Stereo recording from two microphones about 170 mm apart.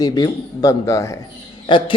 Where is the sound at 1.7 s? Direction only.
30° left (ahead or behind).